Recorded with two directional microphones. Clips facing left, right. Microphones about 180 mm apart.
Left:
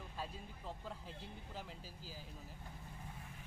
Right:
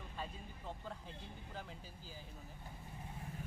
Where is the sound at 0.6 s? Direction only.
Centre (ahead or behind).